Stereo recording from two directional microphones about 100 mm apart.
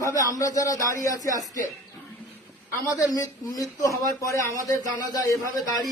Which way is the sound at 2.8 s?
35° left (ahead or behind).